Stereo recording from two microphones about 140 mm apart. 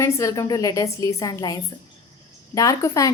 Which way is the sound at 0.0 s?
20° left (ahead or behind).